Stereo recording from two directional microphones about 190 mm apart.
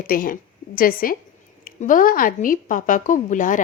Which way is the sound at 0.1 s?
50° left (ahead or behind).